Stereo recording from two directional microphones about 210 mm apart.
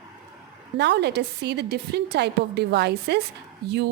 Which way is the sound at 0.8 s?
55° right (ahead or behind).